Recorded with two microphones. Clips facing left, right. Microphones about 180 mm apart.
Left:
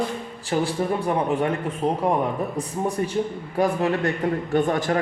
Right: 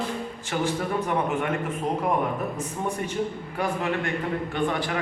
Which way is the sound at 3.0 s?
35° left (ahead or behind).